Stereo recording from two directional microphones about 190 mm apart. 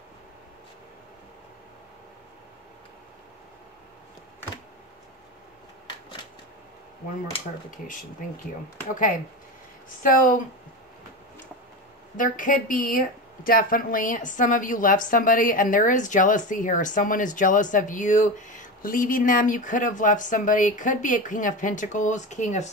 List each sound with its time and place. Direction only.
7.7 s speech: 45° left (ahead or behind)
10.0 s speech: 45° left (ahead or behind)
12.2 s speech: 45° left (ahead or behind)